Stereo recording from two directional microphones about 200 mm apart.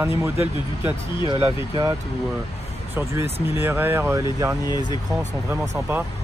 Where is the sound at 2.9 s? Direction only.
10° right (ahead or behind).